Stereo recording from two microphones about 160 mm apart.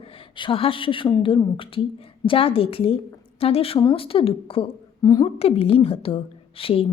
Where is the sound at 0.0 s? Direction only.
35° left (ahead or behind).